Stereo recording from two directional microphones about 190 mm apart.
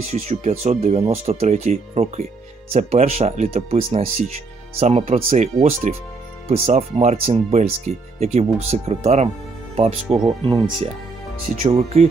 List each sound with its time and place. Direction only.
0.1 s speech: 35° right (ahead or behind)